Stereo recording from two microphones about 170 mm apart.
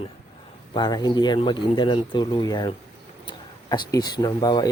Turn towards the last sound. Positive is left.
turn(degrees=25)  # may be behind; listen again after turning